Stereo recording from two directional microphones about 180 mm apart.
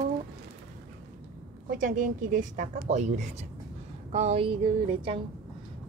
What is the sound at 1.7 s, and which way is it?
A woman's voice, 45° right (ahead or behind).